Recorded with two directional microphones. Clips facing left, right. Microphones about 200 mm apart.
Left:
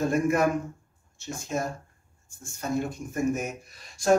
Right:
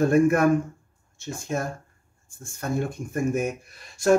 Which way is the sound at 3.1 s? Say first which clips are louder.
Right 2 dB; 55° right (ahead or behind).